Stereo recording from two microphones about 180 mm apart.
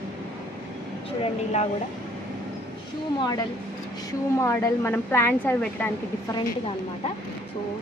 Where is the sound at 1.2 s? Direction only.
35° left (ahead or behind).